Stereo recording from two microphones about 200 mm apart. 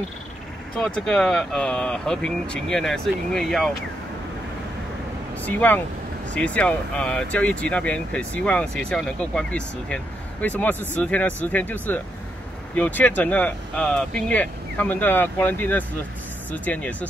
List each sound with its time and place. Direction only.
0.7 s speech: 5° left (ahead or behind)
5.4 s speech: 10° left (ahead or behind)